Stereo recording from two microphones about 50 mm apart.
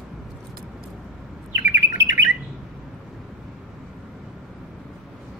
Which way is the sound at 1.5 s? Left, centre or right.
Right.